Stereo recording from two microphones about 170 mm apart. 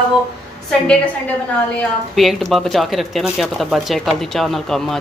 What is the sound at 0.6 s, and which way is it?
Speech, 5° left (ahead or behind).